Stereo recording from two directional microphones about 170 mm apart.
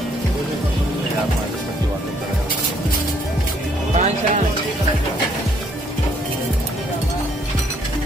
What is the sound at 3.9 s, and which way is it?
Music, 45° right (ahead or behind).